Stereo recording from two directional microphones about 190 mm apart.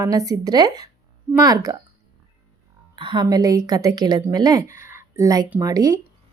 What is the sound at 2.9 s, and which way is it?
A woman's voice, 25° right (ahead or behind).